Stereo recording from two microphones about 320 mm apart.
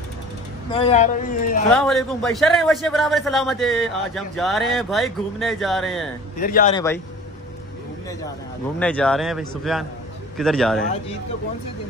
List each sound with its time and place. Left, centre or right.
0.7 s speech: centre
1.7 s a man's voice: centre
6.4 s speech: left
6.7 s a man's voice: centre
8.7 s a man's voice: centre